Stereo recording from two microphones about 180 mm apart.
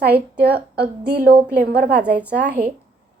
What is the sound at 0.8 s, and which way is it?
A woman's voice, 60° right (ahead or behind).